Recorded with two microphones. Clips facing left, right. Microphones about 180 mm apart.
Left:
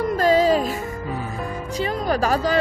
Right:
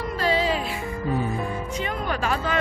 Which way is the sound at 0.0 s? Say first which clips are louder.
Left 6 dB; 45° left (ahead or behind).